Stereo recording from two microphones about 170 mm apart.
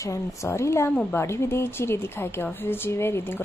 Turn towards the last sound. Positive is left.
turn(degrees=15)  # may be behind; listen again after turning